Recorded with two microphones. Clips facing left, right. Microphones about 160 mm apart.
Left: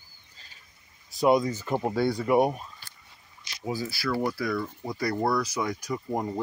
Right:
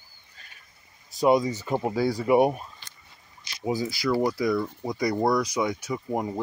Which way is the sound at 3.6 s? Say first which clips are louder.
Right 4 dB; 20° right (ahead or behind).